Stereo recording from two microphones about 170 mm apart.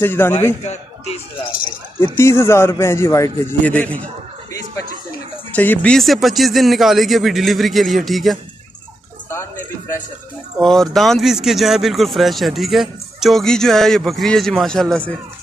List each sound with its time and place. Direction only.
0.0 s a man's voice: 15° left (ahead or behind)
0.7 s speech: 35° left (ahead or behind)
2.1 s a man's voice: 15° left (ahead or behind)
5.5 s speech: 10° left (ahead or behind)
9.3 s music: 15° left (ahead or behind)
10.6 s speech: 5° left (ahead or behind)